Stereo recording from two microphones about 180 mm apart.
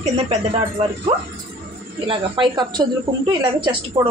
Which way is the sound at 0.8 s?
30° right (ahead or behind).